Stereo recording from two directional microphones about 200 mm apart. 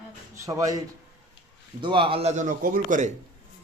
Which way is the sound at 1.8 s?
25° right (ahead or behind).